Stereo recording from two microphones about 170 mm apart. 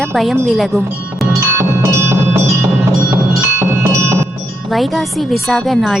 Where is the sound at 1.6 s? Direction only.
15° right (ahead or behind).